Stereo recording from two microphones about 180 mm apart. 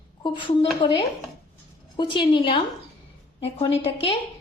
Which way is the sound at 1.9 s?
25° left (ahead or behind).